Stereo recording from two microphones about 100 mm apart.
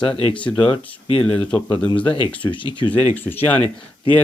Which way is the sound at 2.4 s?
55° left (ahead or behind).